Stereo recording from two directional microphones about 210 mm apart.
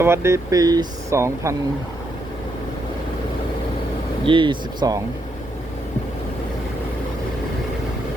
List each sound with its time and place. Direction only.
0.0 s speech: 10° right (ahead or behind)
4.3 s speech: 20° right (ahead or behind)